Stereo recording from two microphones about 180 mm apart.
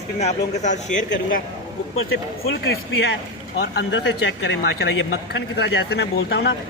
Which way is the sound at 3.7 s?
70° left (ahead or behind).